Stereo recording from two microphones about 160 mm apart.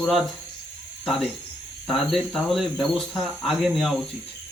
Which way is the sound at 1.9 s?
Centre (ahead or behind).